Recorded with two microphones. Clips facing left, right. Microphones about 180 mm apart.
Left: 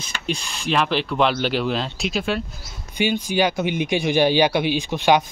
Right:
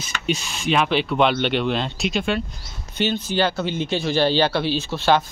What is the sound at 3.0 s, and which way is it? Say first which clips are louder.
Speech: left 1 dB; 10° left (ahead or behind).